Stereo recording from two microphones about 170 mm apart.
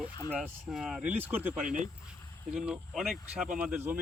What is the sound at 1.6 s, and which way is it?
Speech, 50° right (ahead or behind).